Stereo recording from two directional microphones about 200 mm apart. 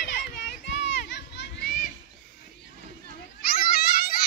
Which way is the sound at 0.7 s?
60° left (ahead or behind).